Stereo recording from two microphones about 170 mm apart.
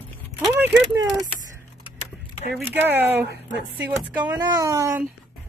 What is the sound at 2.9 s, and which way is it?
Speech, 10° right (ahead or behind).